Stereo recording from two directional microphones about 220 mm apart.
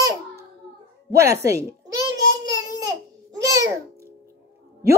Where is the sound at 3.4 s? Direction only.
15° right (ahead or behind).